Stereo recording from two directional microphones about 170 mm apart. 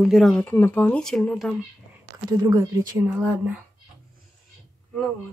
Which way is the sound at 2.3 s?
20° right (ahead or behind).